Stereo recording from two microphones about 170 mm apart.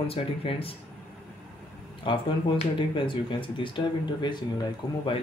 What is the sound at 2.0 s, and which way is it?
Speech, 30° left (ahead or behind).